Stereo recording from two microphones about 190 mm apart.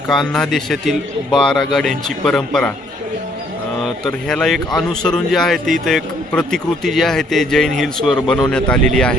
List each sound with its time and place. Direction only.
0.1 s a man's voice: centre (ahead or behind)
3.8 s a man's voice: centre (ahead or behind)